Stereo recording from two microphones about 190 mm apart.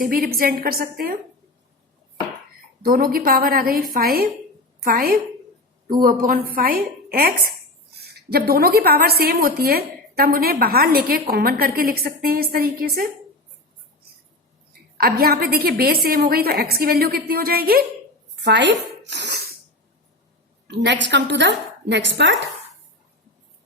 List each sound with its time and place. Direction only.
0.0 s a woman's voice: 50° right (ahead or behind)
2.8 s a woman's voice: 50° right (ahead or behind)
14.7 s a woman's voice: 50° right (ahead or behind)
18.3 s speech: 65° right (ahead or behind)
20.7 s a woman's voice: 65° right (ahead or behind)